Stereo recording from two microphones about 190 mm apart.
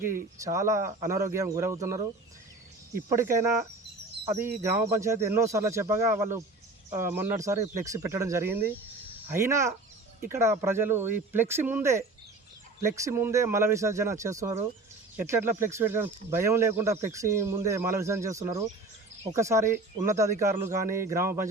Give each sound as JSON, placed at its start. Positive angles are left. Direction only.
{"t": 0.3, "sound": "speech", "side_deg": -15}